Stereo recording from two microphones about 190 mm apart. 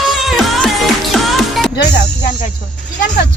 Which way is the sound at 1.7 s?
65° left (ahead or behind).